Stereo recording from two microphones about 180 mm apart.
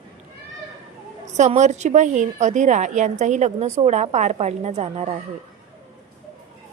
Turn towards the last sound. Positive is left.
turn(degrees=-40)  # may be behind; listen again after turning